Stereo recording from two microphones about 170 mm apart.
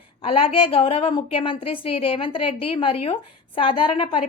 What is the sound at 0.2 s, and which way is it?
A woman's voice, 30° left (ahead or behind).